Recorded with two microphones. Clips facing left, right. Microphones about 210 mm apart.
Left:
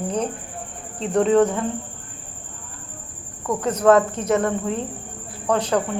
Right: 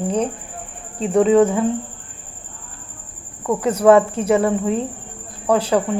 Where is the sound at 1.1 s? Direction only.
5° right (ahead or behind).